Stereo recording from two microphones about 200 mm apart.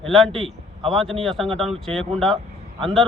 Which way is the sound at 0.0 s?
Centre (ahead or behind).